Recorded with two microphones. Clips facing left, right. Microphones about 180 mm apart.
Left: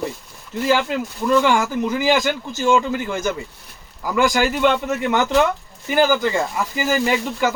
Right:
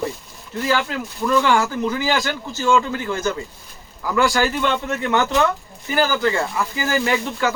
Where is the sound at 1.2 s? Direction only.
15° left (ahead or behind).